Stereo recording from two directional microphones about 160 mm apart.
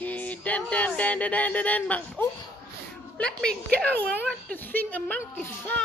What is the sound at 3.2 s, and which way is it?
A woman's voice, 5° left (ahead or behind).